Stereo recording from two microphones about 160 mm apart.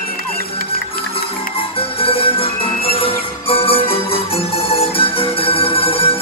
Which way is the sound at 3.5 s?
35° left (ahead or behind).